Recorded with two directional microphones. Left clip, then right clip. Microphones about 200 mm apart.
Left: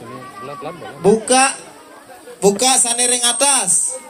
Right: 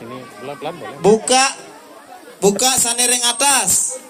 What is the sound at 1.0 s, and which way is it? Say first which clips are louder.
Speech: even; 40° right (ahead or behind).